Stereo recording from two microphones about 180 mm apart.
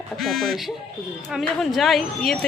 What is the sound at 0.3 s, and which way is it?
A woman's voice, centre (ahead or behind).